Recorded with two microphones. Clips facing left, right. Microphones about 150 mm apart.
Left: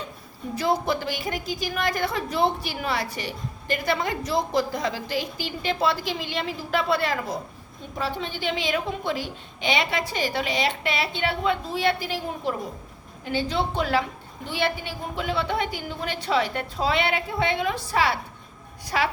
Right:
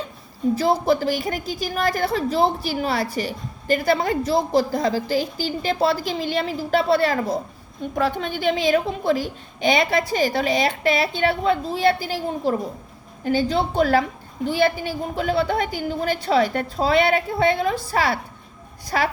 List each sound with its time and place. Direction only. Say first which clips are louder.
0.5 s a woman's voice: right 4 dB; 35° right (ahead or behind)
7.9 s a woman's voice: right 6 dB; 55° right (ahead or behind)